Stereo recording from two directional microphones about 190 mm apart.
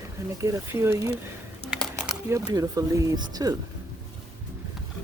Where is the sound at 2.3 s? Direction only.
15° right (ahead or behind).